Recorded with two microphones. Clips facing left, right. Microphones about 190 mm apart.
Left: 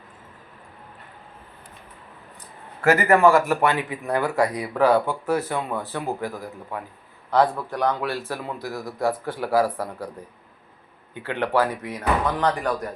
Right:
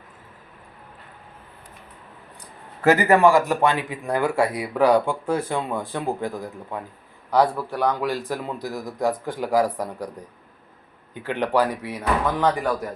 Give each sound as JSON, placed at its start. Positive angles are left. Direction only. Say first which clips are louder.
{"t": 2.8, "sound": "a man's voice", "louder": "right 1 dB", "side_deg": -15}
{"t": 11.2, "sound": "a man's voice", "louder": "right 1 dB", "side_deg": -15}